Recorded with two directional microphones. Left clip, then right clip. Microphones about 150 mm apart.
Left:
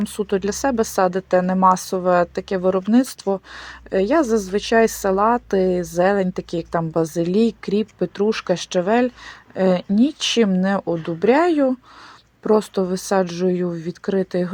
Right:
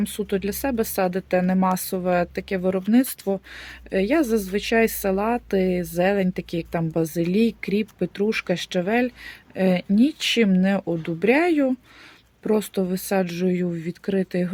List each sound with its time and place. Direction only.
0.0 s speech: 10° right (ahead or behind)